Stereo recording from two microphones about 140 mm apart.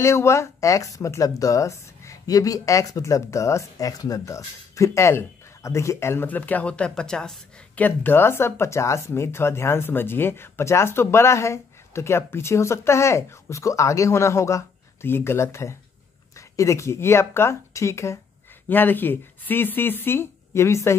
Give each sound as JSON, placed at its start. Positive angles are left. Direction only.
{"t": 0.0, "sound": "speech", "side_deg": 20}